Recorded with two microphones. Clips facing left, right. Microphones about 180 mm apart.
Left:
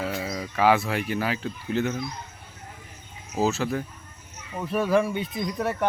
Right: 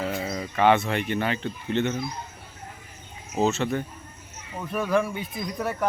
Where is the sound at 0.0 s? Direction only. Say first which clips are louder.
Right 1 dB; centre (ahead or behind).